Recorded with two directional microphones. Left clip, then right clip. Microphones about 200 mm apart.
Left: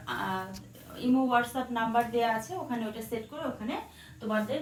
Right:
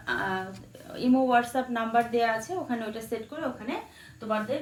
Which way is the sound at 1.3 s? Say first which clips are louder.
Right 3 dB; 50° right (ahead or behind).